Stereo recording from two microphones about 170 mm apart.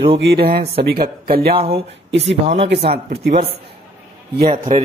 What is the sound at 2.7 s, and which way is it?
Speech, 75° right (ahead or behind).